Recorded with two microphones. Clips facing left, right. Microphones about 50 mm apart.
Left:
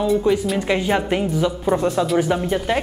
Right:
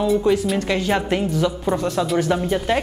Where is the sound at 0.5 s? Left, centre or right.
Centre.